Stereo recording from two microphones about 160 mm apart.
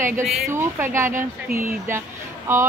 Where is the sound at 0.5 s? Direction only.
15° right (ahead or behind).